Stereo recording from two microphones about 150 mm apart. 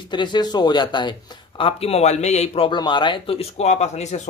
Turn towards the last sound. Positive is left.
turn(degrees=50)  # may be behind; listen again after turning